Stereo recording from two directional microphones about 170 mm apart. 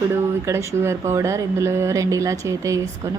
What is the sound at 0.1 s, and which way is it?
Speech, 15° right (ahead or behind).